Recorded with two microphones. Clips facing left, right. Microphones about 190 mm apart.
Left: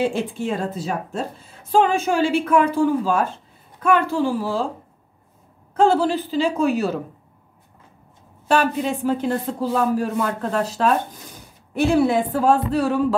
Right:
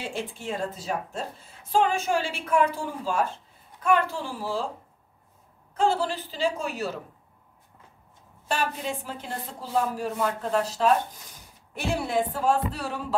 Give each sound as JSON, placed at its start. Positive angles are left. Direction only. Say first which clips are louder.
{"t": 0.0, "sound": "a woman's voice", "louder": "left 11 dB", "side_deg": 65}
{"t": 1.7, "sound": "a woman's voice", "louder": "left 5 dB", "side_deg": 85}
{"t": 5.8, "sound": "a woman's voice", "louder": "left 8 dB", "side_deg": 60}
{"t": 8.5, "sound": "speech", "louder": "left 9 dB", "side_deg": 75}